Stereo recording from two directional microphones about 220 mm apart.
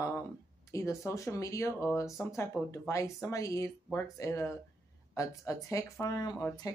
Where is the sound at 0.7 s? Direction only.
15° left (ahead or behind).